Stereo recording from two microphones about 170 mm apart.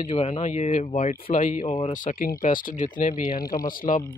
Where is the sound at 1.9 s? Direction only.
55° left (ahead or behind).